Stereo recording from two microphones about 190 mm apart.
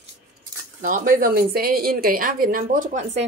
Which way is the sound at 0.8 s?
45° right (ahead or behind).